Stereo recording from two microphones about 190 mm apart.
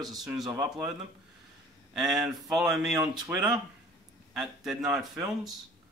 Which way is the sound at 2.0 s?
Centre (ahead or behind).